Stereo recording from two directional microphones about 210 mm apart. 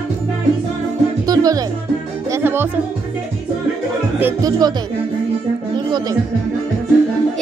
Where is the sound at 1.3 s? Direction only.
15° right (ahead or behind).